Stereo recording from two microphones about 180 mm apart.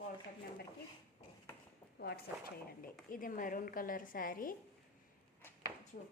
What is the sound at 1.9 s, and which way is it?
Speech, 60° left (ahead or behind).